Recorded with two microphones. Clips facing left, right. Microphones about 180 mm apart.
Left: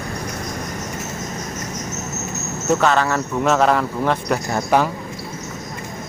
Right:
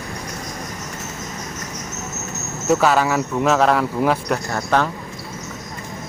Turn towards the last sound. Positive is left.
turn(degrees=10)  # may be behind; listen again after turning